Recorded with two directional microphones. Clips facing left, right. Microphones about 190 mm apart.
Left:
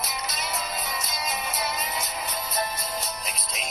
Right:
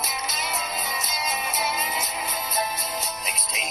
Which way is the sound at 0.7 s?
25° right (ahead or behind).